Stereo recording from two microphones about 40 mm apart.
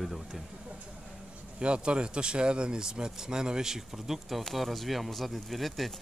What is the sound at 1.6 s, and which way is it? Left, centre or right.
Speech, right.